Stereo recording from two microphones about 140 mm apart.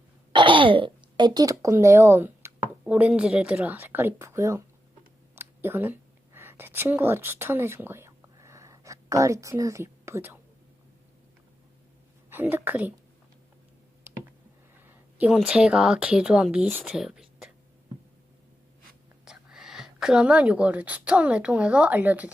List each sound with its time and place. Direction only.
0.3 s speech: 35° right (ahead or behind); by 4.6 s 20° right (ahead or behind)
5.3 s a sound: 15° right (ahead or behind)
12.3 s a woman's voice: 15° right (ahead or behind)
14.8 s a sound: 10° right (ahead or behind)
15.4 s speech: 5° right (ahead or behind)
19.2 s a woman's voice: 5° right (ahead or behind)